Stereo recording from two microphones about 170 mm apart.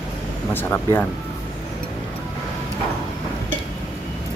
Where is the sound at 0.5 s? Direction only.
10° left (ahead or behind).